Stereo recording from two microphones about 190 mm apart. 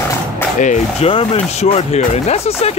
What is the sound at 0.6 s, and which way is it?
Speech, 35° left (ahead or behind).